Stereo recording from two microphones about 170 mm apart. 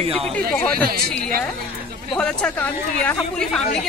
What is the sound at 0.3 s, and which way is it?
Speech, 5° left (ahead or behind).